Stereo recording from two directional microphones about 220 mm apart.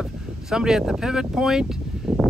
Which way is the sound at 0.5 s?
5° right (ahead or behind).